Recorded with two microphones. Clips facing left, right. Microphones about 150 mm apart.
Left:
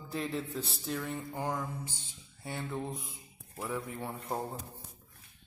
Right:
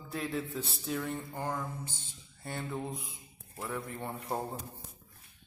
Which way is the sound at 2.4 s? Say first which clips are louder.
Even; centre (ahead or behind).